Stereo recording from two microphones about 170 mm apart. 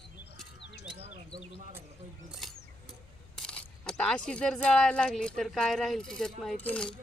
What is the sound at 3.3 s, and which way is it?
Speech, 5° left (ahead or behind).